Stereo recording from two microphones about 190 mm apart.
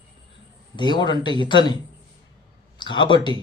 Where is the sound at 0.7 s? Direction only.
25° left (ahead or behind).